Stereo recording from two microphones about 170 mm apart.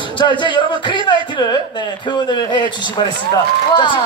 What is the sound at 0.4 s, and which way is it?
Speech, 30° left (ahead or behind).